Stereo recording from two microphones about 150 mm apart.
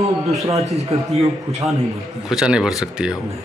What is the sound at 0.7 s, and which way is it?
Speech, 45° right (ahead or behind).